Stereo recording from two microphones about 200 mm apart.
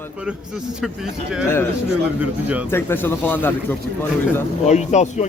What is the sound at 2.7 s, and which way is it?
Speech, 10° left (ahead or behind).